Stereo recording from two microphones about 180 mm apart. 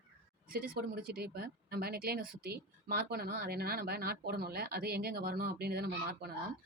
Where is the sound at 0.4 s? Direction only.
55° right (ahead or behind).